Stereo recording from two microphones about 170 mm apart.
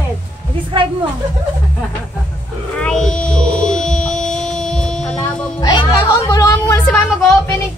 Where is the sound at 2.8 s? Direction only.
5° left (ahead or behind).